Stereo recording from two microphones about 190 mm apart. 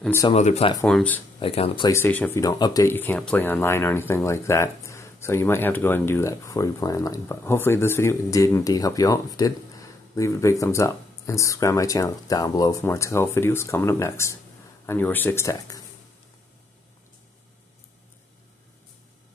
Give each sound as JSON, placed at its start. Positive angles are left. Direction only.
{"t": 0.3, "sound": "speech", "side_deg": 35}
{"t": 0.8, "sound": "speech", "side_deg": 5}
{"t": 1.4, "sound": "speech", "side_deg": 30}
{"t": 1.9, "sound": "speech", "side_deg": 10}